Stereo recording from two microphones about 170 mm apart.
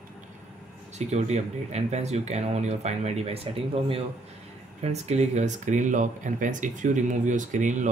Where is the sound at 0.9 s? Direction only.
40° right (ahead or behind).